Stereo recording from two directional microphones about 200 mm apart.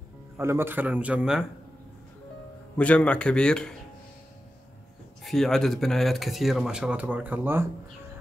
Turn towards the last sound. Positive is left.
turn(degrees=-10)  # may be behind; listen again after turning